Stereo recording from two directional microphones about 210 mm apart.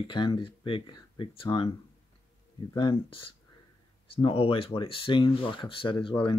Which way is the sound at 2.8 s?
25° left (ahead or behind).